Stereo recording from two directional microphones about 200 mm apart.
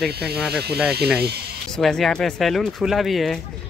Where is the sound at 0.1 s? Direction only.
55° right (ahead or behind).